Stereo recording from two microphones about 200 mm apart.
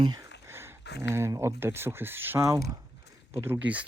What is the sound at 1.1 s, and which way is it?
Speech, 15° right (ahead or behind).